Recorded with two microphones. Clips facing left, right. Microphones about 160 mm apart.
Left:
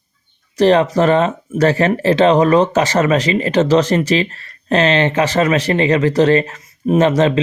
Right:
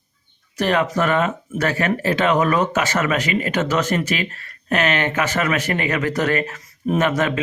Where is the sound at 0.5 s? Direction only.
35° left (ahead or behind).